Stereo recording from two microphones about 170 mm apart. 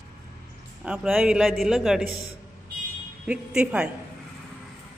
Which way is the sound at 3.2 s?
5° right (ahead or behind).